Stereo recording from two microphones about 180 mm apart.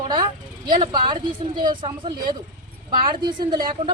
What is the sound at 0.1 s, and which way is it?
A woman's voice, 25° right (ahead or behind).